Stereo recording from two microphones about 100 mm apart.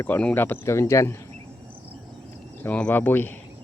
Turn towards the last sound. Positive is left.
turn(degrees=20)  # may be behind; listen again after turning